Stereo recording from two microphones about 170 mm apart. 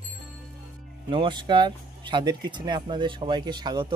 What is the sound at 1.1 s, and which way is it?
Speech, 30° right (ahead or behind).